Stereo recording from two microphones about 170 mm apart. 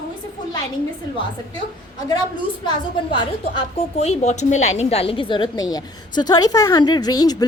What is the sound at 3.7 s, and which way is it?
A woman's voice, 40° left (ahead or behind).